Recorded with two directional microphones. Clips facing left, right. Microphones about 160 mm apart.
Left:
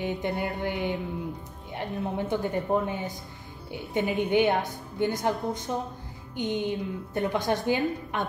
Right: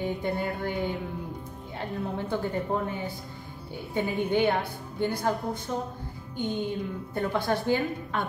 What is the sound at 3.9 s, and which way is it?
A woman's voice, 20° left (ahead or behind).